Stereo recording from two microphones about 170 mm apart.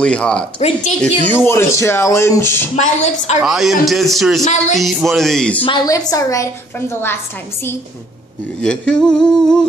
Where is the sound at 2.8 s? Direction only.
45° left (ahead or behind).